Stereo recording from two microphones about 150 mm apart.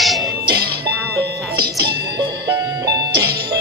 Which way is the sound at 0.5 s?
90° right.